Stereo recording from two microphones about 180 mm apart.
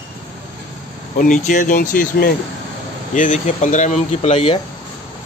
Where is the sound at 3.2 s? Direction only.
45° left (ahead or behind).